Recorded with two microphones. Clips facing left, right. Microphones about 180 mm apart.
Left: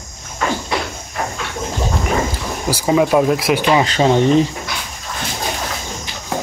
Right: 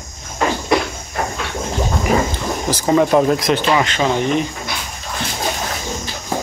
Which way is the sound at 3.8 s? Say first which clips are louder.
Left 4 dB; 30° left (ahead or behind).